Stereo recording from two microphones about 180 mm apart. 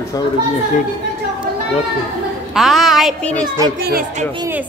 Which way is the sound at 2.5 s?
Centre (ahead or behind).